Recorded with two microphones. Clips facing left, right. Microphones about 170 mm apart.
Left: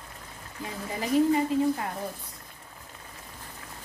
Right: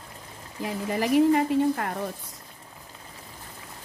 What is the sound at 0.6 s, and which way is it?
Speech, 70° right (ahead or behind).